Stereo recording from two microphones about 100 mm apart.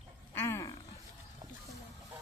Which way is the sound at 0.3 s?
25° left (ahead or behind).